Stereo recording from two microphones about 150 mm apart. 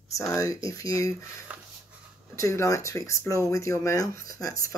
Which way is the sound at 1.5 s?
10° right (ahead or behind).